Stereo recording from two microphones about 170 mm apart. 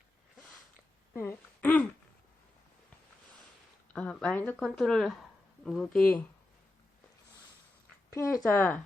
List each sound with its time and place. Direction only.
1.1 s a sound: 15° left (ahead or behind)
3.9 s speech: 5° left (ahead or behind)
8.1 s speech: 15° left (ahead or behind)